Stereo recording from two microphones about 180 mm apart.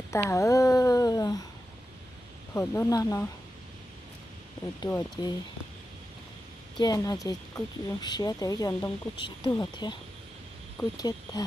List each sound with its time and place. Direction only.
0.1 s speech: 15° left (ahead or behind)
2.5 s speech: 15° left (ahead or behind)
4.8 s speech: 20° left (ahead or behind)
6.8 s speech: 20° left (ahead or behind)
11.0 s speech: 20° left (ahead or behind)